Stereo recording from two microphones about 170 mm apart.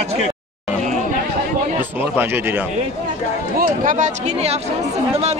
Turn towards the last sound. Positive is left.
turn(degrees=-50)  # may be behind; listen again after turning